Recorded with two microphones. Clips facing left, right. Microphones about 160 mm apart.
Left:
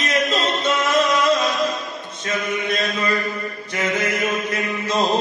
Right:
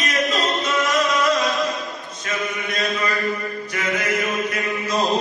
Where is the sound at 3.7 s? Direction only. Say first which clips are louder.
Left 2 dB; 25° left (ahead or behind).